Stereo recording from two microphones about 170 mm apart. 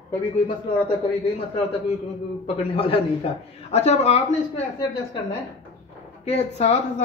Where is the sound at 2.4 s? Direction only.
35° left (ahead or behind).